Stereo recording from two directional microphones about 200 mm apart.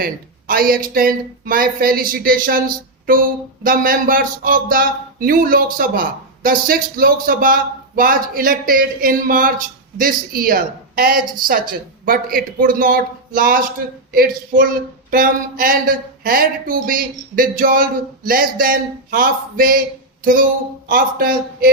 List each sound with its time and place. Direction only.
0.0 s speech: 45° right (ahead or behind)
20.8 s speech: 45° right (ahead or behind)